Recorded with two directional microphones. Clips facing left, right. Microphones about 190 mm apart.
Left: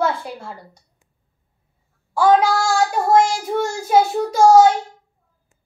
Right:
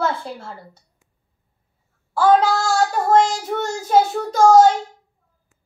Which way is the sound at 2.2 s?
10° left (ahead or behind).